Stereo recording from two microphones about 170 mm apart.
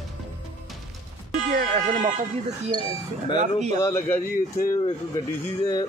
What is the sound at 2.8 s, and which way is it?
Speech, 30° left (ahead or behind).